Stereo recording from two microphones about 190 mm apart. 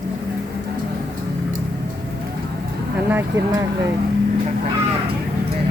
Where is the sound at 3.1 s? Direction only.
15° right (ahead or behind).